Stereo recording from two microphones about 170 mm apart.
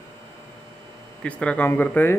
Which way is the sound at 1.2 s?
5° left (ahead or behind).